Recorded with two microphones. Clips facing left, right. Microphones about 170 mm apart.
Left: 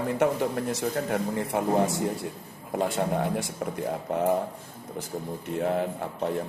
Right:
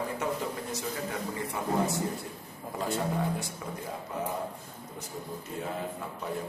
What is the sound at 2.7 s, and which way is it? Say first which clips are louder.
Speech: left 5 dB; 60° left (ahead or behind).